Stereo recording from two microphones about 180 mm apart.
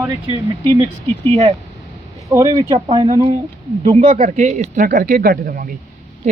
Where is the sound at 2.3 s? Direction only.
20° right (ahead or behind).